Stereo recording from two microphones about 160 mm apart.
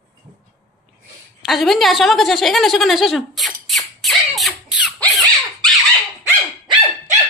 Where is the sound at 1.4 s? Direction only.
Centre (ahead or behind).